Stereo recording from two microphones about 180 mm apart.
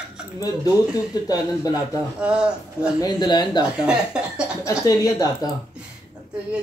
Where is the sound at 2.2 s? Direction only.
5° right (ahead or behind).